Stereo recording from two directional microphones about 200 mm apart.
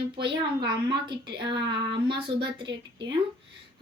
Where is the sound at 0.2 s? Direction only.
25° right (ahead or behind).